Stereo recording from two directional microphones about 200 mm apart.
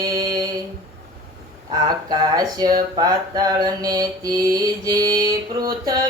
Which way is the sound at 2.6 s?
20° right (ahead or behind).